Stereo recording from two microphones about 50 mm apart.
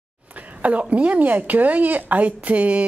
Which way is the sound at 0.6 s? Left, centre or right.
Right.